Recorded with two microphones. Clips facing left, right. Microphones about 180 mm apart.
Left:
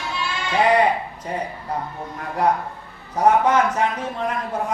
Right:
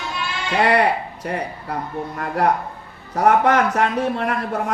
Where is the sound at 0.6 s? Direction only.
70° right (ahead or behind).